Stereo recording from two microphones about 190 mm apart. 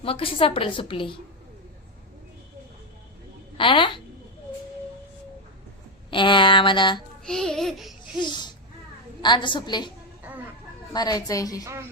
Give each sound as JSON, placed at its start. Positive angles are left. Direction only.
{"t": 0.0, "sound": "a woman's voice", "side_deg": 30}
{"t": 3.6, "sound": "a woman's voice", "side_deg": 25}
{"t": 6.1, "sound": "a woman's voice", "side_deg": 25}
{"t": 7.3, "sound": "speech", "side_deg": 5}
{"t": 8.2, "sound": "a woman's voice", "side_deg": 25}
{"t": 10.9, "sound": "a woman's voice", "side_deg": 20}
{"t": 11.6, "sound": "speech", "side_deg": -15}